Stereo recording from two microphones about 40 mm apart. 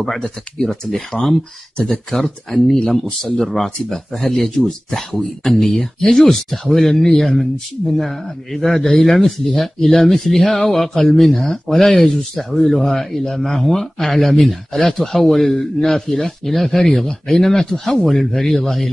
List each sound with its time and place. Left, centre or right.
0.7 s a man's voice: centre
4.6 s a man's voice: centre